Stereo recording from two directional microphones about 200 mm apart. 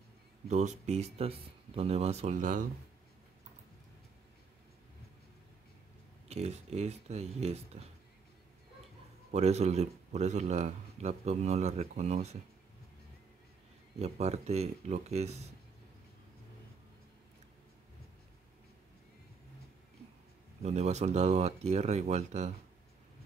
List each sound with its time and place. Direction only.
0.5 s speech: 35° right (ahead or behind)
6.2 s speech: 30° right (ahead or behind)
9.3 s speech: 35° right (ahead or behind)
13.9 s speech: 35° right (ahead or behind)
20.6 s speech: 35° right (ahead or behind)